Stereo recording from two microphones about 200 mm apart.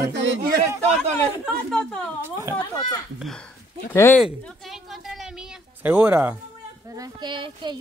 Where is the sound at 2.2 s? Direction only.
15° right (ahead or behind).